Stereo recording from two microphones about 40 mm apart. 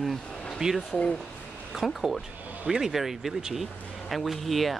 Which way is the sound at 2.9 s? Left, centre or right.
Centre.